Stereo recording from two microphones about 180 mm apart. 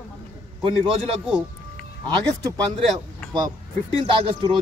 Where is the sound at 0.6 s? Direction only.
30° right (ahead or behind).